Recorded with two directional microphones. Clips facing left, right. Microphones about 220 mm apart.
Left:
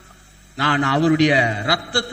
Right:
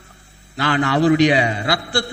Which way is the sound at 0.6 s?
20° right (ahead or behind).